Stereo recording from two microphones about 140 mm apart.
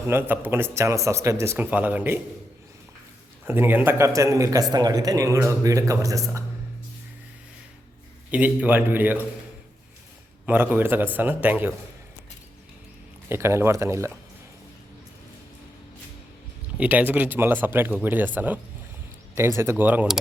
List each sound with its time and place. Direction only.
0.1 s speech: 15° right (ahead or behind)
3.4 s a man's voice: 15° right (ahead or behind)
8.3 s speech: 10° right (ahead or behind)
10.4 s speech: 15° right (ahead or behind)
13.2 s a man's voice: 15° right (ahead or behind)
16.7 s speech: 10° right (ahead or behind)